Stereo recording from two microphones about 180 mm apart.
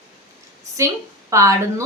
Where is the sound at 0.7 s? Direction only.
15° right (ahead or behind).